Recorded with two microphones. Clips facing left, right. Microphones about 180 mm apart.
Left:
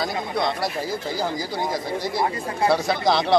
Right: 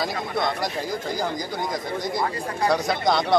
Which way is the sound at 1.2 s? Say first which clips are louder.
Left 1 dB; centre (ahead or behind).